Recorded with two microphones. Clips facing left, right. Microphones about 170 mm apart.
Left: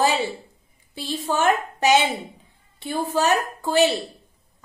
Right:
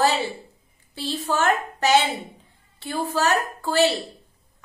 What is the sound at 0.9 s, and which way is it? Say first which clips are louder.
A woman's voice: even; 15° left (ahead or behind).